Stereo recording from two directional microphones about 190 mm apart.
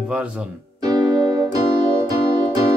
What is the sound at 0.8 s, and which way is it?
Music, 20° right (ahead or behind).